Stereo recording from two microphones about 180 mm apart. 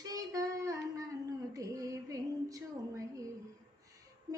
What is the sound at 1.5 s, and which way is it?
Child singing, 20° right (ahead or behind).